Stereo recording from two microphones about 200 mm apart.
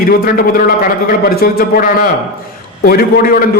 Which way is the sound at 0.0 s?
45° left (ahead or behind).